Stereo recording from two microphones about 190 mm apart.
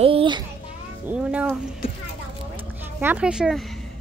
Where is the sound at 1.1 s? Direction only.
5° right (ahead or behind).